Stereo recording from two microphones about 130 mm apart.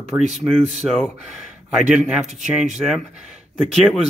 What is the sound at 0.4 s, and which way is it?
Speech, 25° right (ahead or behind).